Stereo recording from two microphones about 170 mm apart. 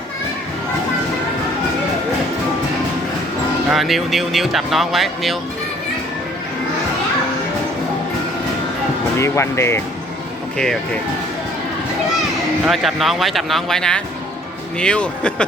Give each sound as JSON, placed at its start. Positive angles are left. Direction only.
{"t": 3.7, "sound": "speech", "side_deg": 0}
{"t": 9.1, "sound": "speech", "side_deg": 15}
{"t": 12.6, "sound": "speech", "side_deg": 0}